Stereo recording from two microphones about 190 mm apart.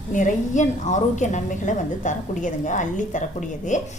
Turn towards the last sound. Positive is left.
turn(degrees=40)  # may be behind; listen again after turning